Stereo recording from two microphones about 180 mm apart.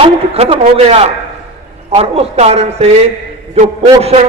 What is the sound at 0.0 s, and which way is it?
A man's voice, 35° right (ahead or behind).